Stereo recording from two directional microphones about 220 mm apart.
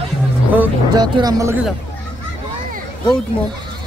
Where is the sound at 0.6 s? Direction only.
20° right (ahead or behind).